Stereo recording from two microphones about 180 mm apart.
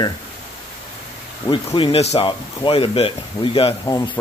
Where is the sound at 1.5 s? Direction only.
30° left (ahead or behind).